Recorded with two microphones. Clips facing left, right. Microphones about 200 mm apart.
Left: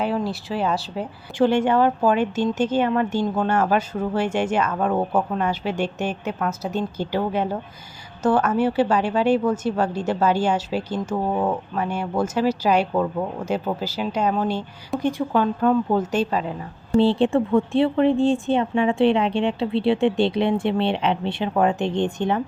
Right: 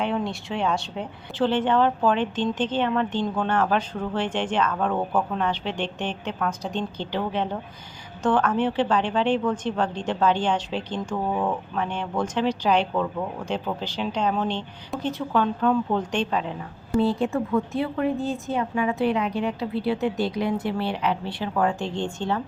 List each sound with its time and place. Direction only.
0.0 s speech: 5° left (ahead or behind)
12.9 s speech: 20° left (ahead or behind)
13.7 s speech: 5° left (ahead or behind)
17.0 s speech: 30° left (ahead or behind)